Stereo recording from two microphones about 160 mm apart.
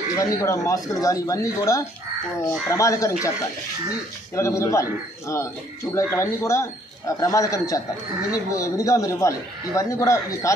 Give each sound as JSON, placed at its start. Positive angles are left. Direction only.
{"t": 0.2, "sound": "a man's voice", "side_deg": 20}
{"t": 4.4, "sound": "a man's voice", "side_deg": 20}
{"t": 5.9, "sound": "a man's voice", "side_deg": 15}